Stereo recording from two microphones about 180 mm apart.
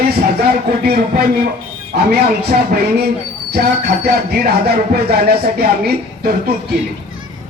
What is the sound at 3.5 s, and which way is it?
Music, 60° right (ahead or behind).